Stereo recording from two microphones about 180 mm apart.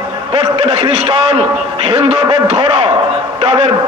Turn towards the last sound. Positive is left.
turn(degrees=-35)  # may be behind; listen again after turning